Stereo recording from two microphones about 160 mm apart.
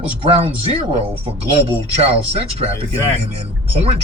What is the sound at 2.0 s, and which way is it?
Speech, 40° right (ahead or behind).